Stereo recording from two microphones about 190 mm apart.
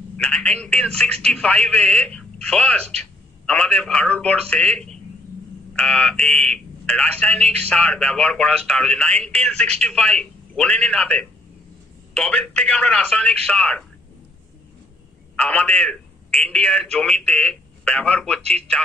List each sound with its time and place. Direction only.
0.2 s a man's voice: 5° left (ahead or behind)
15.3 s a man's voice: 5° left (ahead or behind)